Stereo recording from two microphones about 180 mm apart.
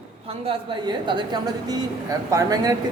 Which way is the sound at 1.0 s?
25° right (ahead or behind).